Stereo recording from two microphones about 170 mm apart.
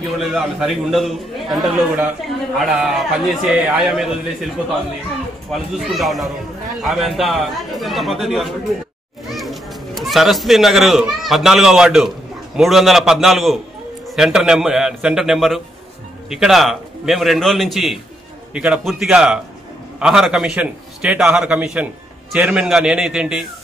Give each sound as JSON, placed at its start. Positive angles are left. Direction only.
{"t": 0.2, "sound": "a man's voice", "side_deg": 0}
{"t": 5.5, "sound": "a man's voice", "side_deg": 0}